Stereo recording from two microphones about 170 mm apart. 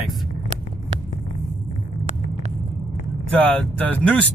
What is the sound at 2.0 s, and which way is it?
Hum, 40° right (ahead or behind).